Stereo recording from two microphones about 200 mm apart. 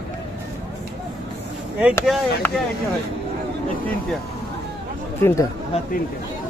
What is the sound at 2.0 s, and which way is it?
Speech, centre (ahead or behind).